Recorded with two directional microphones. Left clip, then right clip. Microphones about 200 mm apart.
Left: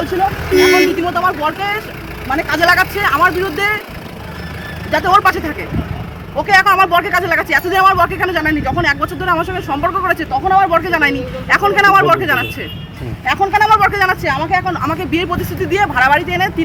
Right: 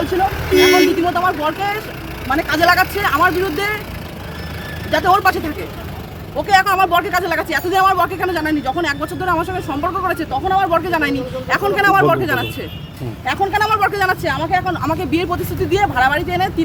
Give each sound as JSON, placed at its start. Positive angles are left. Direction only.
{"t": 1.1, "sound": "speech", "side_deg": 0}
{"t": 4.9, "sound": "a man's voice", "side_deg": -10}
{"t": 6.5, "sound": "speech", "side_deg": -5}